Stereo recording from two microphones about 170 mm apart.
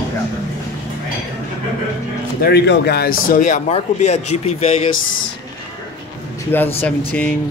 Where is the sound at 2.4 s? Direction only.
80° left; by 4.8 s 40° left (ahead or behind).